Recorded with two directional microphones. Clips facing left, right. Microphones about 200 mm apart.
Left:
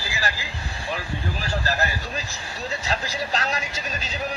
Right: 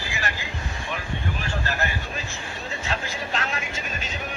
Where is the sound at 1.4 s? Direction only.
35° left (ahead or behind).